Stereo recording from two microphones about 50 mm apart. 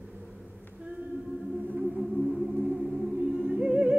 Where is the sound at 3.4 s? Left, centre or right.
Right.